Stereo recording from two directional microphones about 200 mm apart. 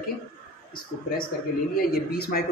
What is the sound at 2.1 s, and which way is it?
Speech, 50° left (ahead or behind).